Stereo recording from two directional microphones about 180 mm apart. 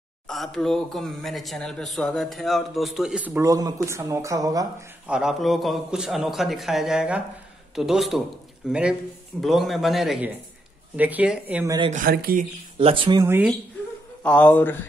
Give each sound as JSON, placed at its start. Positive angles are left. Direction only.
{"t": 0.3, "sound": "a man's voice", "side_deg": 0}
{"t": 5.0, "sound": "a man's voice", "side_deg": -5}
{"t": 11.9, "sound": "speech", "side_deg": -55}
{"t": 12.7, "sound": "speech", "side_deg": -30}
{"t": 13.2, "sound": "speech", "side_deg": -15}
{"t": 14.2, "sound": "speech", "side_deg": 5}